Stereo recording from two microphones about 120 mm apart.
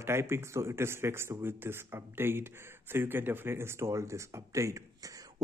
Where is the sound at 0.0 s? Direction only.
20° right (ahead or behind).